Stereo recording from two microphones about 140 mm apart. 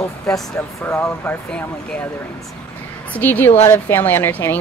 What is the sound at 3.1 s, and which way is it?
Speech, 15° left (ahead or behind).